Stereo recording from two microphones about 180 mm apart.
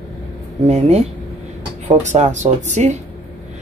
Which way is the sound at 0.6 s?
35° right (ahead or behind).